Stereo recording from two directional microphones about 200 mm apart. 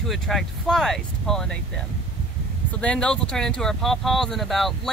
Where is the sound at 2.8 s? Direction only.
5° left (ahead or behind).